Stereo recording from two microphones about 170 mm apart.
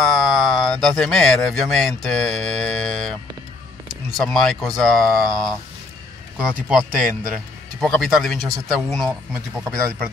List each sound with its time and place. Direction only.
0.0 s speech: centre (ahead or behind)
4.2 s speech: centre (ahead or behind)